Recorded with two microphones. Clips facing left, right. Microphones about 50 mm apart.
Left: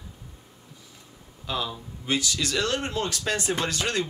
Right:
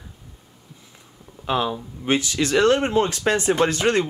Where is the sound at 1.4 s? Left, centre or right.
Right.